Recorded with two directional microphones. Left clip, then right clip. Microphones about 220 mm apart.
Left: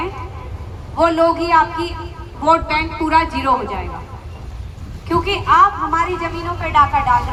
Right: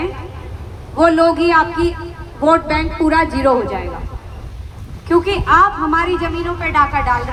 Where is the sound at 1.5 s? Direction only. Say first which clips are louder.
Right 1 dB; 40° right (ahead or behind).